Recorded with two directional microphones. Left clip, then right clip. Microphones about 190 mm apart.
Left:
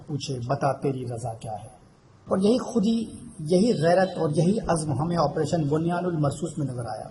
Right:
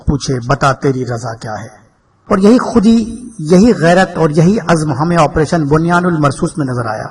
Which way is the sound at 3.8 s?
40° right (ahead or behind).